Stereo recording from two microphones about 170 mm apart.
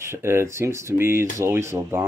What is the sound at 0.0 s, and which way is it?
Speech, 15° right (ahead or behind).